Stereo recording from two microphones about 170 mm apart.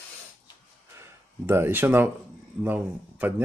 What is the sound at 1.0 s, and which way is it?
Speech, 15° right (ahead or behind).